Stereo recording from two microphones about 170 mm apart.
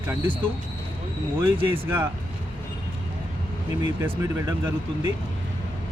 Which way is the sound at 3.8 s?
15° right (ahead or behind).